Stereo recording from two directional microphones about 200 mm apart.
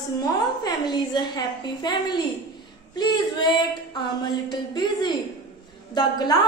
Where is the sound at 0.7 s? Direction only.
20° left (ahead or behind).